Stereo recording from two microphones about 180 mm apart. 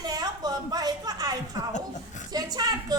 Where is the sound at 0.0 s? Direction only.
20° right (ahead or behind).